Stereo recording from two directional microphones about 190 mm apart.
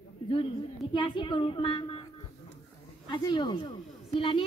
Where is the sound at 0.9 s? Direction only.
25° left (ahead or behind).